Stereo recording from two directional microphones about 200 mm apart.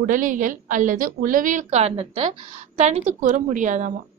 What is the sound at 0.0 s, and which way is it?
A woman's voice, 40° right (ahead or behind).